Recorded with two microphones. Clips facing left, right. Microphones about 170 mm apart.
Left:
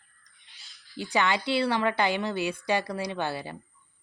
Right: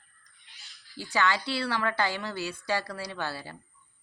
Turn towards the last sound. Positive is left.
turn(degrees=20)  # may be behind; listen again after turning